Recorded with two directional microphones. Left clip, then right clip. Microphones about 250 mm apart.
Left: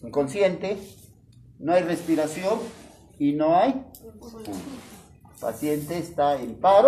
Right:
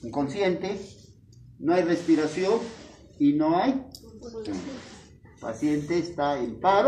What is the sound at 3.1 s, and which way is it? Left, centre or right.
Speech, left.